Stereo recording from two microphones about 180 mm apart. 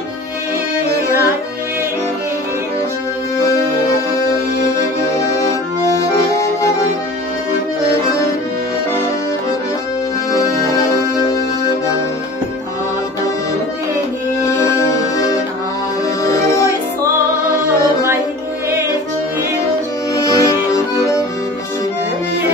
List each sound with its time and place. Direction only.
14.4 s music: 15° left (ahead or behind)
20.3 s accordion: 20° left (ahead or behind)